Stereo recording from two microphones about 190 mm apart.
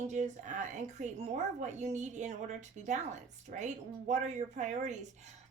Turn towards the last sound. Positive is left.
turn(degrees=-40)  # may be behind; listen again after turning